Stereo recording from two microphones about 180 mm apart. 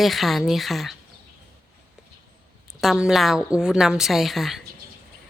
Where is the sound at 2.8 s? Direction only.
Centre (ahead or behind).